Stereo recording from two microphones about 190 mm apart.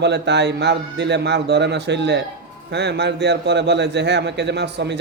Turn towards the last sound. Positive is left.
turn(degrees=-60)  # may be behind; listen again after turning